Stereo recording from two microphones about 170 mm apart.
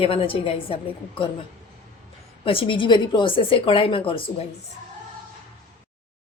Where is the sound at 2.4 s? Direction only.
30° left (ahead or behind).